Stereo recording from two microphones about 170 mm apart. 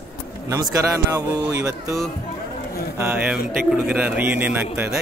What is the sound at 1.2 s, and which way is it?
A man's voice, 20° right (ahead or behind).